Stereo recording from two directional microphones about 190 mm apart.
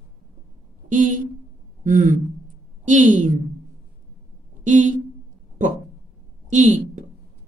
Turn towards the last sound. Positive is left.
turn(degrees=-40)  # may be behind; listen again after turning